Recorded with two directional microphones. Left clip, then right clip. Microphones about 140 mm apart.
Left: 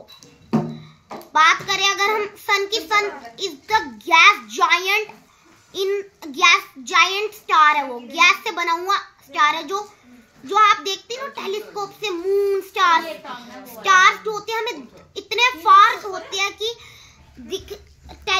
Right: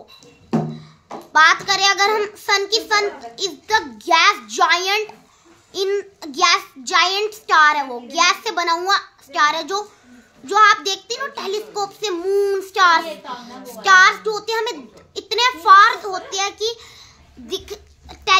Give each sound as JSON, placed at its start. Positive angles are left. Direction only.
{"t": 1.3, "sound": "a child's voice", "side_deg": -30}
{"t": 17.5, "sound": "baby laughter", "side_deg": -45}